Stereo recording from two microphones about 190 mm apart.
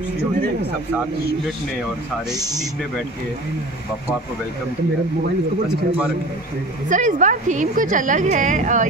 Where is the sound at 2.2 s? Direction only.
20° right (ahead or behind).